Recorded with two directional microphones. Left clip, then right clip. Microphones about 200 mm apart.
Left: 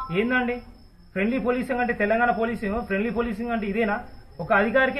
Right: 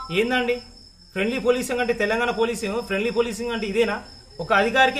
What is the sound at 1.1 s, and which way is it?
Speech, 30° right (ahead or behind).